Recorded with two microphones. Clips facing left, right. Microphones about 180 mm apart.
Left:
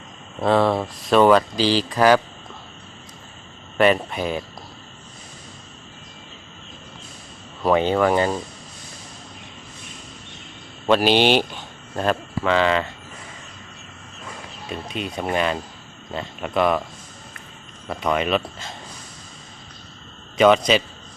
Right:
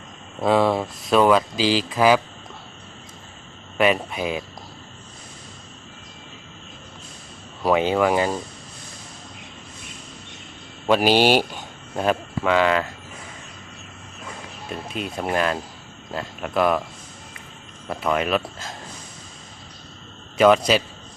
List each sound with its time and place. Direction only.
0.4 s speech: 10° right (ahead or behind)
3.8 s speech: 5° right (ahead or behind)
7.6 s speech: 10° right (ahead or behind)
10.8 s speech: 5° right (ahead or behind)
14.7 s speech: centre (ahead or behind)
17.8 s speech: 5° right (ahead or behind)
20.4 s speech: 5° right (ahead or behind)